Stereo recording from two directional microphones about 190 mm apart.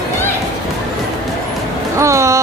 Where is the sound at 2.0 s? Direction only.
15° right (ahead or behind).